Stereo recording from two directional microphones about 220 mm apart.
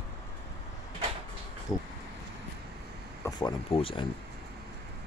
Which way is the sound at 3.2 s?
20° left (ahead or behind).